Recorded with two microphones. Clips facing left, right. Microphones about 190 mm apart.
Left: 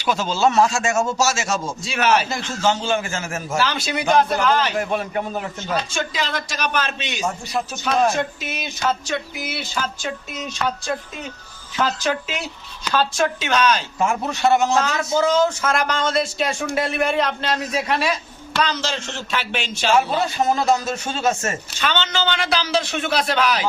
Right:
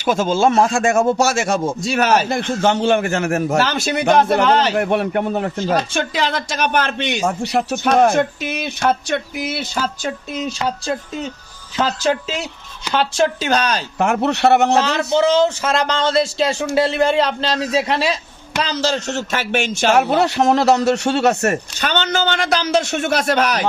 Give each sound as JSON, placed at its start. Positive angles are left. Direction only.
{"t": 0.0, "sound": "a man's voice", "side_deg": -50}
{"t": 2.4, "sound": "a man's voice", "side_deg": -60}
{"t": 3.6, "sound": "a man's voice", "side_deg": -45}
{"t": 5.5, "sound": "speech", "side_deg": -35}
{"t": 5.9, "sound": "a man's voice", "side_deg": -60}
{"t": 7.9, "sound": "a man's voice", "side_deg": -55}
{"t": 10.7, "sound": "a man's voice", "side_deg": -30}
{"t": 14.0, "sound": "speech", "side_deg": -70}
{"t": 15.1, "sound": "a man's voice", "side_deg": -25}
{"t": 19.9, "sound": "speech", "side_deg": -70}
{"t": 21.8, "sound": "a man's voice", "side_deg": -45}